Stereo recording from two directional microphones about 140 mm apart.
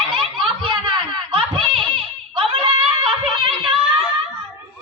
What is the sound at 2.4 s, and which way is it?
Snicker, 40° right (ahead or behind).